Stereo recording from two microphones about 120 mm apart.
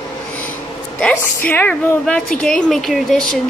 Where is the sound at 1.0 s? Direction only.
15° left (ahead or behind).